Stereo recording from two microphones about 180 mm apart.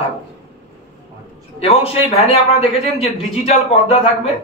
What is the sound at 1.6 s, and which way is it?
Speech, 35° left (ahead or behind).